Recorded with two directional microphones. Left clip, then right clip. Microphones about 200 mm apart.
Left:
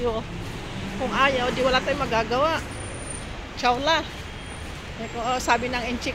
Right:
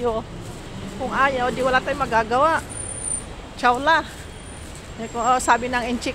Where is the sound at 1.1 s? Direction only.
10° right (ahead or behind).